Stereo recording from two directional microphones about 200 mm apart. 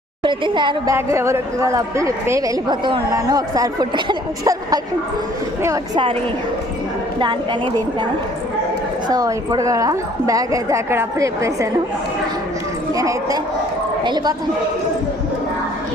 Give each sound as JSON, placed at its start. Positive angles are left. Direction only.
{"t": 0.2, "sound": "a woman's voice", "side_deg": -25}
{"t": 7.2, "sound": "a woman's voice", "side_deg": -25}
{"t": 9.0, "sound": "a woman's voice", "side_deg": -20}
{"t": 12.9, "sound": "a woman's voice", "side_deg": -15}